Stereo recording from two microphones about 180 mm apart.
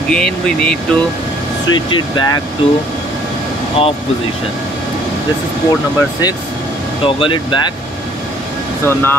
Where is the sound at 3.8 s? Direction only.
30° left (ahead or behind).